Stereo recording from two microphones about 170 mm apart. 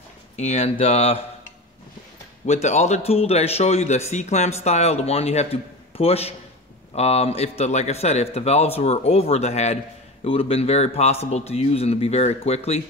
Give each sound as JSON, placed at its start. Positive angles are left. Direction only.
{"t": 0.4, "sound": "a man's voice", "side_deg": 40}
{"t": 2.4, "sound": "a man's voice", "side_deg": 40}